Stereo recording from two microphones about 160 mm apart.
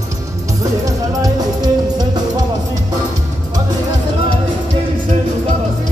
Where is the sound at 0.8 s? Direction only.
25° right (ahead or behind).